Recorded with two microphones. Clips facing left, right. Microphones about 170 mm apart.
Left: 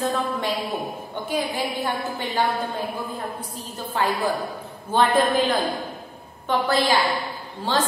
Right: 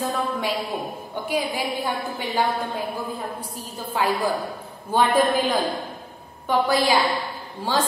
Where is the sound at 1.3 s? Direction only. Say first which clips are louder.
Even; 10° right (ahead or behind).